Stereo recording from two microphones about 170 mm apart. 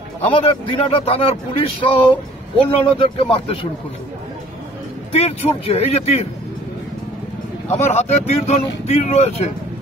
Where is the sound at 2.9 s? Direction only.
30° left (ahead or behind).